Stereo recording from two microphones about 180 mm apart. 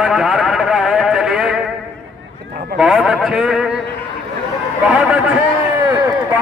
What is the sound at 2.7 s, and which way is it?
Speech, 5° right (ahead or behind).